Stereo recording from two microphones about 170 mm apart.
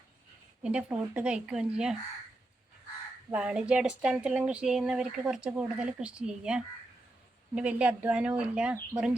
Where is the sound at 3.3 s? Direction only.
5° right (ahead or behind).